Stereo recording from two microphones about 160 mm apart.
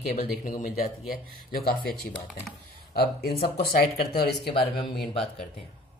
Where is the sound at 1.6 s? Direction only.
75° left (ahead or behind).